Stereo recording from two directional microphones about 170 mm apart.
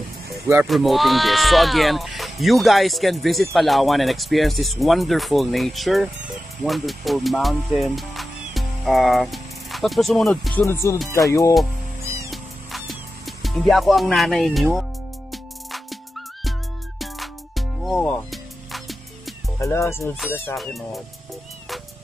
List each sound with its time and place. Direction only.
0.7 s speech: centre (ahead or behind); by 11.0 s 15° left (ahead or behind)
11.1 s music: 20° left (ahead or behind)
12.3 s music: centre (ahead or behind)
17.0 s music: centre (ahead or behind)
19.6 s speech: 15° left (ahead or behind)
20.5 s speech: centre (ahead or behind)